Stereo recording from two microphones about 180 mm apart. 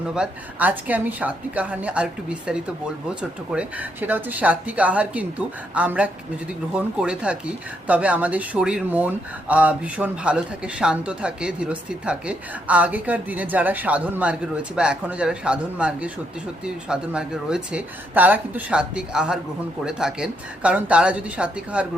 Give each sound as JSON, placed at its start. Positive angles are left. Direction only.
{"t": 0.1, "sound": "speech", "side_deg": -5}